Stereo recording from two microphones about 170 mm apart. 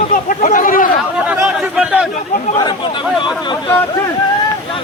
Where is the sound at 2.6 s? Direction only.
25° left (ahead or behind).